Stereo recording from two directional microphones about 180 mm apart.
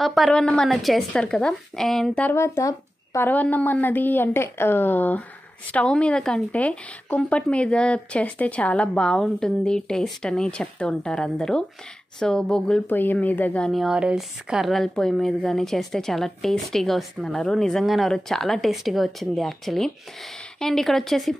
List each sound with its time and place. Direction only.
0.0 s a woman's voice: centre (ahead or behind)